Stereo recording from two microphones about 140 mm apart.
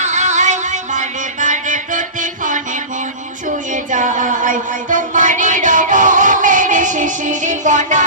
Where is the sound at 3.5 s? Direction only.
65° right (ahead or behind).